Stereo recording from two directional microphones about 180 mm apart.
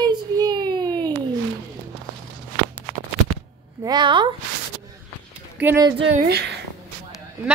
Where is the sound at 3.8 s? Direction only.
25° right (ahead or behind).